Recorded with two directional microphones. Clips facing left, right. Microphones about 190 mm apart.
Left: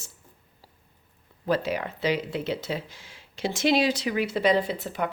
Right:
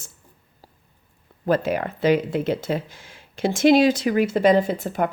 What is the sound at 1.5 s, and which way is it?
Speech, 50° right (ahead or behind).